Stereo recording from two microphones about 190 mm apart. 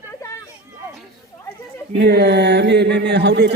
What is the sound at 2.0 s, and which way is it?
Speech, 60° right (ahead or behind).